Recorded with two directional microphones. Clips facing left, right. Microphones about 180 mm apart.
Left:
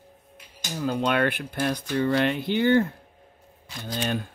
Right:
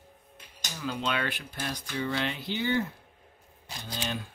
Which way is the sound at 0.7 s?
45° left (ahead or behind).